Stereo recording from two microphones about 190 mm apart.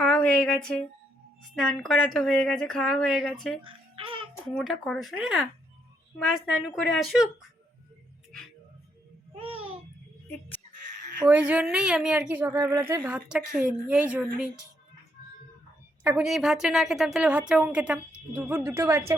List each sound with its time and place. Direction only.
0.0 s a sound: 5° left (ahead or behind)
1.5 s speech: centre (ahead or behind)
3.6 s music: 25° right (ahead or behind)
4.4 s speech: centre (ahead or behind)
9.4 s babbling: 30° right (ahead or behind)
11.3 s speech: 10° right (ahead or behind)
16.0 s speech: 5° right (ahead or behind)